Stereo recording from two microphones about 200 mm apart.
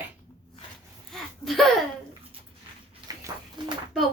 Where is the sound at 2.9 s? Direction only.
20° right (ahead or behind).